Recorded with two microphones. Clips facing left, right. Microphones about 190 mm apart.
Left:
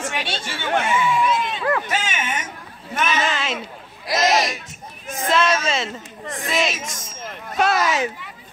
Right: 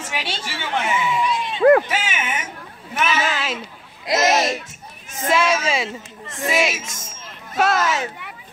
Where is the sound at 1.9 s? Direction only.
10° right (ahead or behind).